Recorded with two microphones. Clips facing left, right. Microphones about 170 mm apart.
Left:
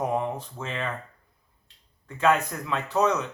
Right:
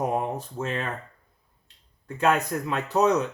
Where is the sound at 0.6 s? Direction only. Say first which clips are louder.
Right 4 dB; 50° right (ahead or behind).